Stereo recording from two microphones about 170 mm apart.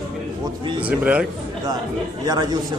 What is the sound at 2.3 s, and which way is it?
Speech, 25° right (ahead or behind).